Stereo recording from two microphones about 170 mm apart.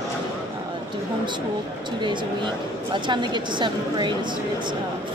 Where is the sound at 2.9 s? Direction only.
25° right (ahead or behind).